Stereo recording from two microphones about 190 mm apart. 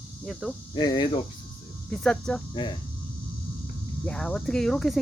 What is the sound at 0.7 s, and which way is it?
Speech, 25° left (ahead or behind).